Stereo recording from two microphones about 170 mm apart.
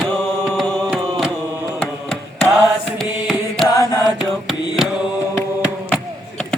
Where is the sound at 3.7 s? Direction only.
20° left (ahead or behind).